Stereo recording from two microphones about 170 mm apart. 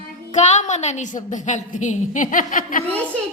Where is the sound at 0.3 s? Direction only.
45° left (ahead or behind).